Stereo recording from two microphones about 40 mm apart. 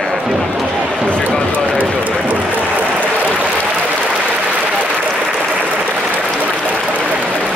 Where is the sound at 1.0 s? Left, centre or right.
Left.